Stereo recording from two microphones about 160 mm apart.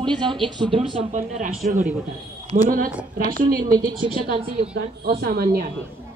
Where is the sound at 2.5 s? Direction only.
55° right (ahead or behind).